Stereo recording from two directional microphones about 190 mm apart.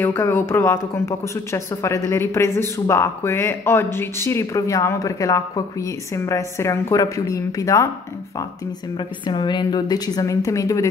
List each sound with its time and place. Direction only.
0.0 s speech: 10° left (ahead or behind)
9.2 s a woman's voice: 25° left (ahead or behind)